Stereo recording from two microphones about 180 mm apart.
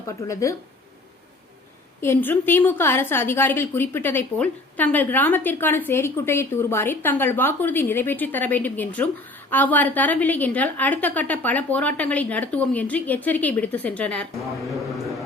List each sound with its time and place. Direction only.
0.3 s a woman's voice: 15° left (ahead or behind)
2.0 s a woman's voice: 10° left (ahead or behind)